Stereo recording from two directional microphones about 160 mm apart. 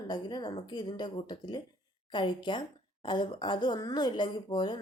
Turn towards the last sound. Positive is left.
turn(degrees=30)  # may be behind; listen again after turning